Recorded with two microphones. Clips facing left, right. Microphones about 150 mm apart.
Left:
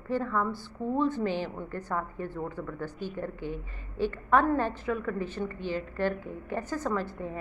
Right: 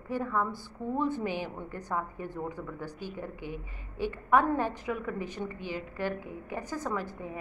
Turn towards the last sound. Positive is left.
turn(degrees=-10)  # may be behind; listen again after turning